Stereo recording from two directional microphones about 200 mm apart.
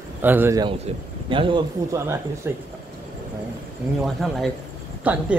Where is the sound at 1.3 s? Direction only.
25° right (ahead or behind).